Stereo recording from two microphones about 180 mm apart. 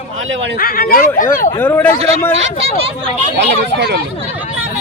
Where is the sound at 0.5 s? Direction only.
55° left (ahead or behind).